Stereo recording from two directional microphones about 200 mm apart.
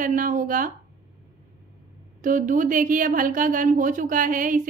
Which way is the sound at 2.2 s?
40° right (ahead or behind).